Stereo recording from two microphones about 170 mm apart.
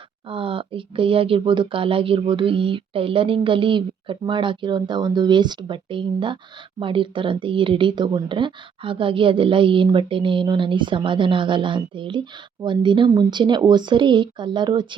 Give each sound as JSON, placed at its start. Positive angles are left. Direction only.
{"t": 0.3, "sound": "speech", "side_deg": -30}